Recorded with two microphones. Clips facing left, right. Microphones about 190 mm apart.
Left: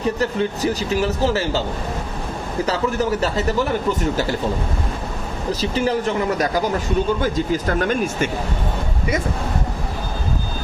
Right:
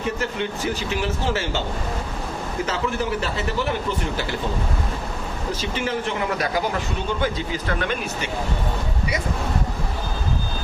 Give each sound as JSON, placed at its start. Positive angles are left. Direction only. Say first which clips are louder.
{"t": 0.0, "sound": "speech", "louder": "left 5 dB", "side_deg": 35}
{"t": 2.6, "sound": "speech", "louder": "left 6 dB", "side_deg": 40}
{"t": 5.7, "sound": "speech", "louder": "left 7 dB", "side_deg": 40}